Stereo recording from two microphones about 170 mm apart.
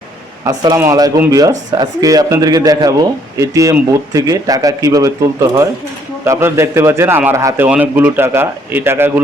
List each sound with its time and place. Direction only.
0.4 s a man's voice: 20° right (ahead or behind)